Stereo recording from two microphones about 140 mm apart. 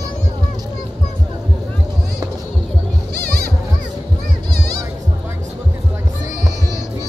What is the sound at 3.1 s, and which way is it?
Music, 90° right.